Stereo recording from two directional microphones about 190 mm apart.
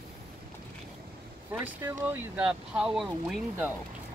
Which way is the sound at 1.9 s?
10° right (ahead or behind).